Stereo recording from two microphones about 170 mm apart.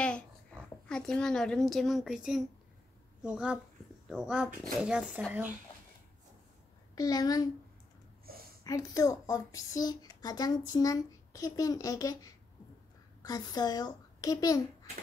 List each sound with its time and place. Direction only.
0.8 s a woman's voice: 5° left (ahead or behind)
7.0 s speech: 20° left (ahead or behind)
8.6 s a child's voice: 20° left (ahead or behind)